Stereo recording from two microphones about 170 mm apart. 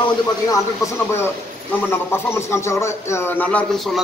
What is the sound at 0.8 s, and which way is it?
A man's voice, 20° left (ahead or behind).